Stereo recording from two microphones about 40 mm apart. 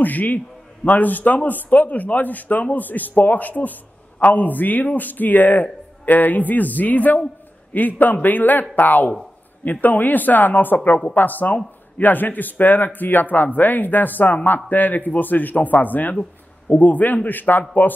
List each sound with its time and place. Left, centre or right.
0.0 s a man's voice: left